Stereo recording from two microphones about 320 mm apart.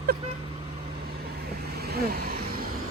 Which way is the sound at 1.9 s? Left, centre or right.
Right.